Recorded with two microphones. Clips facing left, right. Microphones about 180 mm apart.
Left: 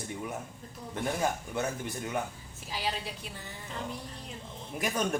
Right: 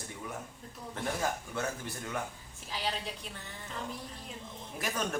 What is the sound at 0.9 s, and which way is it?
A man's voice, 15° left (ahead or behind).